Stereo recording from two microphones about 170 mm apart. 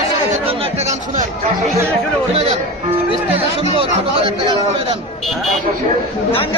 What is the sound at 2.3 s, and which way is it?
A man's voice, 35° right (ahead or behind).